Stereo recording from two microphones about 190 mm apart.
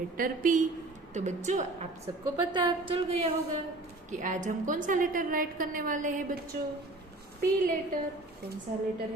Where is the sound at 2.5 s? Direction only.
25° right (ahead or behind).